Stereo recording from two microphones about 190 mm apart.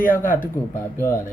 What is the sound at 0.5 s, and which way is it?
Speech, 15° left (ahead or behind).